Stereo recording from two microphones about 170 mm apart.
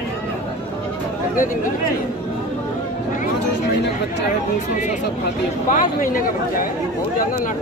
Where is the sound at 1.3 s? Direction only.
50° left (ahead or behind).